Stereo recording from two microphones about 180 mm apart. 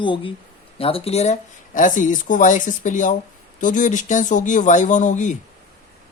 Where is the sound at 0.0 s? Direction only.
30° left (ahead or behind); by 5.4 s 45° left (ahead or behind).